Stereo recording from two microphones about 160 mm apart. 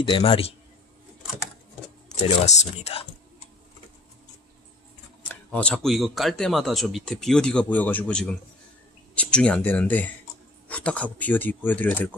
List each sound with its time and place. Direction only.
0.0 s a man's voice: 35° left (ahead or behind)
2.2 s speech: 45° left (ahead or behind)
5.3 s speech: 5° left (ahead or behind)